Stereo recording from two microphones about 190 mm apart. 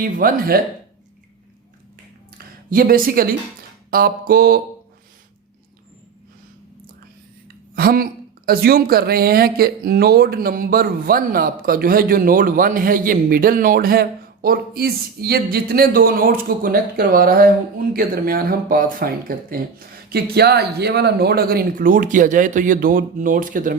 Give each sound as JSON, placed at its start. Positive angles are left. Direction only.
{"t": 0.0, "sound": "speech", "side_deg": -50}
{"t": 2.6, "sound": "speech", "side_deg": -50}
{"t": 7.4, "sound": "a sound", "side_deg": -50}
{"t": 8.4, "sound": "speech", "side_deg": -50}